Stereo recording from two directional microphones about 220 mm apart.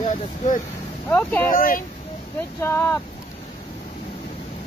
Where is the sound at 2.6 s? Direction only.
10° left (ahead or behind).